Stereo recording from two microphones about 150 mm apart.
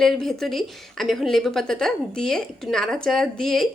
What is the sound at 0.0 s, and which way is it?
A woman's voice, centre (ahead or behind).